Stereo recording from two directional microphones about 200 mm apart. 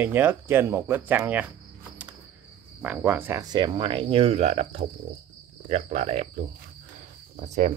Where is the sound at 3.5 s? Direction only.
25° right (ahead or behind).